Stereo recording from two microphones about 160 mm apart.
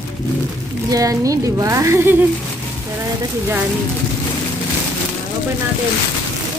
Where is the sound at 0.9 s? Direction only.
20° right (ahead or behind).